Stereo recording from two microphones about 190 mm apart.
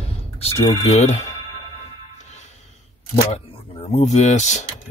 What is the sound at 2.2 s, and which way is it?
Music, 35° left (ahead or behind).